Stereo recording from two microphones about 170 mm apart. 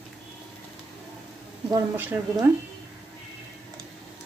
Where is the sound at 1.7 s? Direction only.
15° right (ahead or behind).